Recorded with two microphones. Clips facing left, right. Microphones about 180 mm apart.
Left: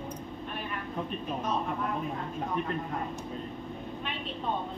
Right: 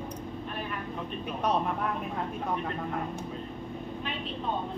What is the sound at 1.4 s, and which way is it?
Speech, 70° right (ahead or behind).